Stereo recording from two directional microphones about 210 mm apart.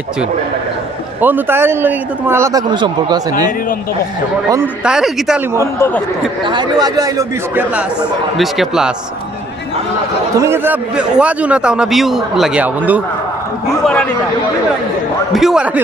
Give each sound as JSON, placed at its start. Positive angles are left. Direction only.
{"t": 1.2, "sound": "speech", "side_deg": -10}
{"t": 4.5, "sound": "a man's voice", "side_deg": -10}
{"t": 6.5, "sound": "a man's voice", "side_deg": -20}
{"t": 10.3, "sound": "a man's voice", "side_deg": -15}
{"t": 15.3, "sound": "a man's voice", "side_deg": -5}